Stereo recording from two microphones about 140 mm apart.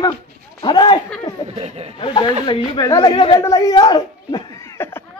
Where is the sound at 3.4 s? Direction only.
25° left (ahead or behind).